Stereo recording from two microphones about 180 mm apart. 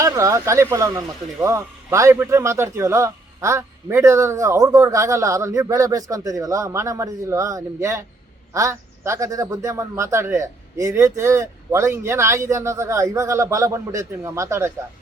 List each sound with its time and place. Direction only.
0.0 s speech: 20° right (ahead or behind)